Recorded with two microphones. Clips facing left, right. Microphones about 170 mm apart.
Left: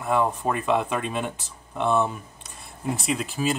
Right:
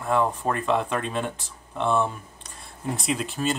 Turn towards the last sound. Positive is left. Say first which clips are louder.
# left 1 dB
turn(degrees=0)  # may be behind; listen again after turning